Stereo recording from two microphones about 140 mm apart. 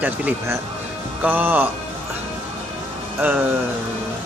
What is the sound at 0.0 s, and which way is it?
Speech, 15° right (ahead or behind).